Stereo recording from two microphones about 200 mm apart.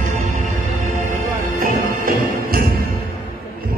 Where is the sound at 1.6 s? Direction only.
45° right (ahead or behind).